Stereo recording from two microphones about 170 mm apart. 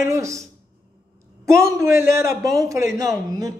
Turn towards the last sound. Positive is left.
turn(degrees=-20)  # may be behind; listen again after turning